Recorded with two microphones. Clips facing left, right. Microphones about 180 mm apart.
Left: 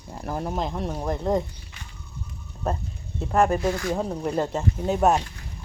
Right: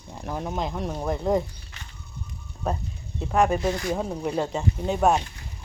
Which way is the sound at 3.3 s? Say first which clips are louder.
Left 1 dB; centre (ahead or behind).